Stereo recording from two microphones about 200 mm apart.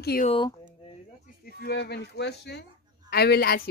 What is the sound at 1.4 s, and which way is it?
A woman's voice, 55° left (ahead or behind).